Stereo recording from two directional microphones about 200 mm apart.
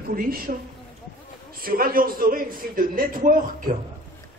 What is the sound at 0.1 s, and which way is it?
A man's voice, 45° right (ahead or behind).